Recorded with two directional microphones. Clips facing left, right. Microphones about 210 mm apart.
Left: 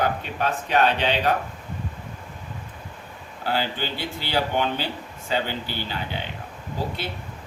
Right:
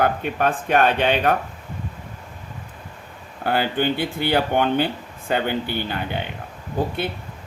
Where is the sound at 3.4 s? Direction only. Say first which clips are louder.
Right 6 dB; 55° right (ahead or behind).